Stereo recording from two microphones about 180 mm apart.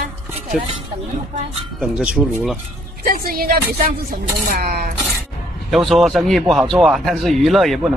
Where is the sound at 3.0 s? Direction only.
55° right (ahead or behind).